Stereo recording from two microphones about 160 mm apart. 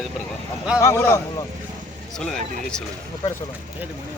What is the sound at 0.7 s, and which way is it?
Speech, 15° left (ahead or behind).